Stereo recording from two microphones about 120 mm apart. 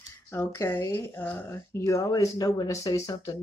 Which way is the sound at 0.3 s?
20° left (ahead or behind).